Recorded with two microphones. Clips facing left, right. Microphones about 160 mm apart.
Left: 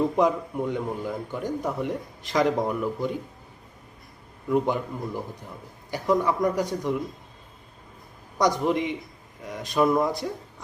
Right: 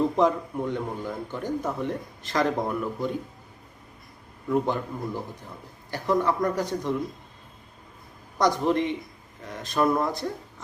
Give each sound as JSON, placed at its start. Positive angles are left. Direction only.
{"t": 0.2, "sound": "a man's voice", "side_deg": 15}
{"t": 4.5, "sound": "a man's voice", "side_deg": 15}
{"t": 8.4, "sound": "a man's voice", "side_deg": 15}